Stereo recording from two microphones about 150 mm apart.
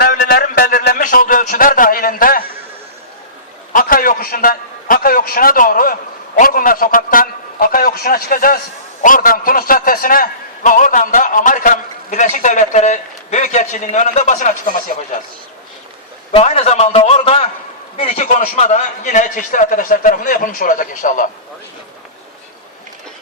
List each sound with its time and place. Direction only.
0.0 s a man's voice: 80° left
3.7 s a man's voice: 70° left (ahead or behind)
16.3 s a man's voice: 45° left (ahead or behind); by 21.2 s 60° left (ahead or behind)